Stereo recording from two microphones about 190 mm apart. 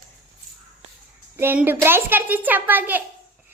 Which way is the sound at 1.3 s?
10° right (ahead or behind).